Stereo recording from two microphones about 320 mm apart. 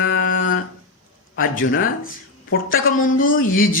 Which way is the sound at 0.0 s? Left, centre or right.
Left.